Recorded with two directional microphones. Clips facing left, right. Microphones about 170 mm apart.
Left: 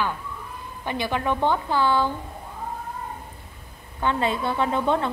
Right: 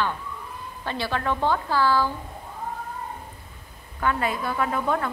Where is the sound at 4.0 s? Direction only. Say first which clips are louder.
Left 1 dB; 25° left (ahead or behind).